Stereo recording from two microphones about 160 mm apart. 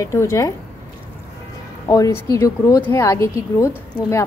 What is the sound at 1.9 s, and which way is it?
A woman's voice, 20° left (ahead or behind).